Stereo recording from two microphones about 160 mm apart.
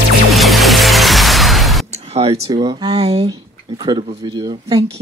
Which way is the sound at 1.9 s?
40° right (ahead or behind).